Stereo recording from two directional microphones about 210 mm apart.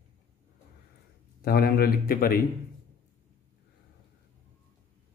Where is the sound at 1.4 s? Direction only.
45° left (ahead or behind).